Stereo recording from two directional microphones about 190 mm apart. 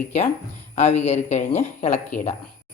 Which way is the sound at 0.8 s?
35° left (ahead or behind).